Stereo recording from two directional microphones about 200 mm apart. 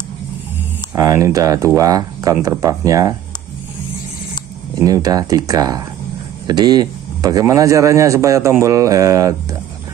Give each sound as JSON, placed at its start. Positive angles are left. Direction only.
{"t": 0.9, "sound": "speech", "side_deg": -15}
{"t": 4.7, "sound": "speech", "side_deg": -15}